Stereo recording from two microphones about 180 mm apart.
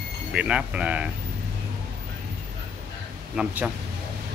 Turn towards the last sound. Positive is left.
turn(degrees=-5)  # may be behind; listen again after turning